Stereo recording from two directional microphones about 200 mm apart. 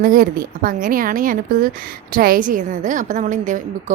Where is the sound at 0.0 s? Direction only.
45° right (ahead or behind).